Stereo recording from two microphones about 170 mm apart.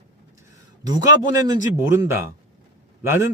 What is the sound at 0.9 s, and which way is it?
Speech, 20° right (ahead or behind).